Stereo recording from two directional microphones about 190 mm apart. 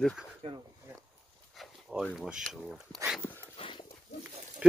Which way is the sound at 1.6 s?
Centre (ahead or behind).